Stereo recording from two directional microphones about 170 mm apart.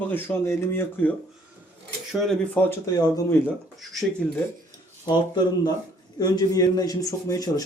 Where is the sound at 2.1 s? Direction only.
Centre (ahead or behind).